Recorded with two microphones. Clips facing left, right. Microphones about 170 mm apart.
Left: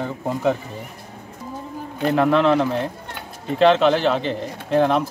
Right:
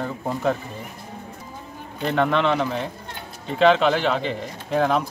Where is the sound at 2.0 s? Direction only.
5° left (ahead or behind).